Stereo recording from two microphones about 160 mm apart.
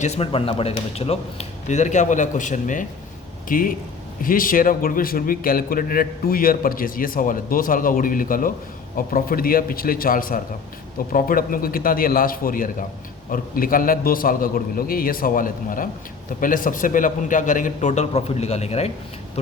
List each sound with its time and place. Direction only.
0.0 s a man's voice: 40° left (ahead or behind)